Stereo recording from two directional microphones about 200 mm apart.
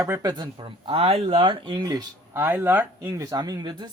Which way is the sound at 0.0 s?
15° right (ahead or behind).